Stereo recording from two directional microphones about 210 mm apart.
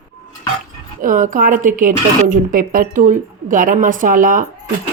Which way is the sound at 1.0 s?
40° right (ahead or behind).